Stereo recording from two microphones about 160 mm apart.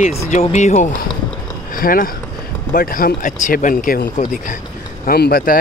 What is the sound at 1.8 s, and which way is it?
Speech, 60° left (ahead or behind).